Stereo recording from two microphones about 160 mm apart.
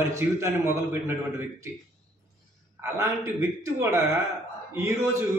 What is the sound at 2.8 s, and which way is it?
A man's voice, 15° right (ahead or behind).